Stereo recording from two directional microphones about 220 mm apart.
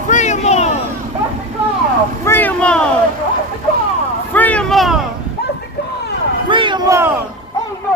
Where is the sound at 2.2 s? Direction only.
10° left (ahead or behind).